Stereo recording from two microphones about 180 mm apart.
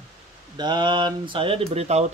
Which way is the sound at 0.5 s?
25° right (ahead or behind).